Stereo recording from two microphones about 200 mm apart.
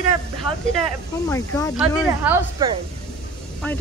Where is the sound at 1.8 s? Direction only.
10° right (ahead or behind).